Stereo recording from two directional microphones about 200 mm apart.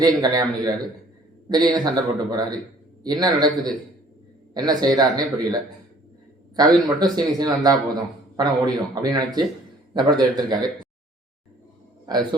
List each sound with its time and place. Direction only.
0.0 s a man's voice: 20° right (ahead or behind)
6.6 s a man's voice: 20° right (ahead or behind)